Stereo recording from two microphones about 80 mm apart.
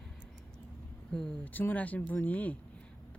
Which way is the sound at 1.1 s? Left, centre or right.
Centre.